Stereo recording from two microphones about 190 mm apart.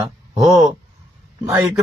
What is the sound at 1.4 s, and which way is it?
Speech, 15° right (ahead or behind).